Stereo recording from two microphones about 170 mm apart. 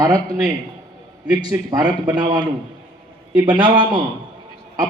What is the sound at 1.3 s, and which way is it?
A man's voice, 25° right (ahead or behind).